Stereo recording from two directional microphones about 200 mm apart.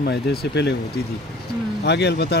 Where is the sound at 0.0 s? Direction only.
55° left (ahead or behind).